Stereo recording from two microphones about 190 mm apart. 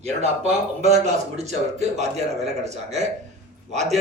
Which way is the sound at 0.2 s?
35° right (ahead or behind).